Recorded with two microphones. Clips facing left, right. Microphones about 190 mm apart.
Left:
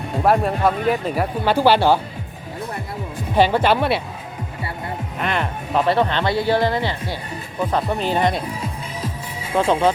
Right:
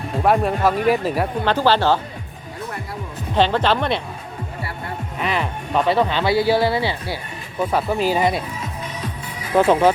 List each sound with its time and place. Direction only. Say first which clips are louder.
0.1 s speech: even; centre (ahead or behind)
1.5 s speech: left 3 dB; 10° left (ahead or behind)
3.3 s speech: left 2 dB; 10° left (ahead or behind)
5.2 s speech: even; centre (ahead or behind)
8.6 s music: left 1 dB; 25° left (ahead or behind)